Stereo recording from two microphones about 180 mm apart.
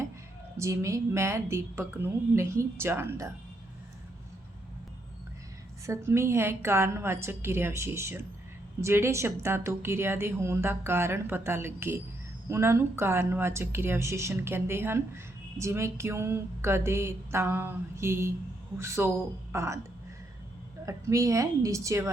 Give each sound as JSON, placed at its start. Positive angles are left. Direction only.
{"t": 0.5, "sound": "a woman's voice", "side_deg": -15}
{"t": 5.8, "sound": "a woman's voice", "side_deg": -15}
{"t": 20.8, "sound": "a woman's voice", "side_deg": -15}